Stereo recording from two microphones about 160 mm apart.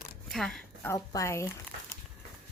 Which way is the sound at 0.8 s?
20° left (ahead or behind).